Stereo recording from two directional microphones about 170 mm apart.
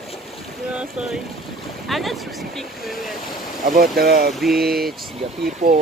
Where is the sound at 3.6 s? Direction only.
55° right (ahead or behind).